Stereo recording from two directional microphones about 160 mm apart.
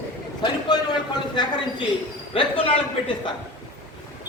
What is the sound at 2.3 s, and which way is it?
Speech, 35° left (ahead or behind).